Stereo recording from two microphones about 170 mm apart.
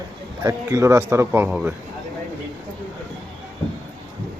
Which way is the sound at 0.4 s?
20° right (ahead or behind).